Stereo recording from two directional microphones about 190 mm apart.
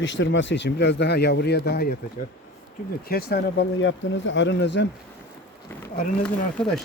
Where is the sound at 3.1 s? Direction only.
55° left (ahead or behind).